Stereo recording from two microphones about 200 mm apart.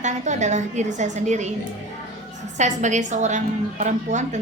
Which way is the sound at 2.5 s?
35° right (ahead or behind).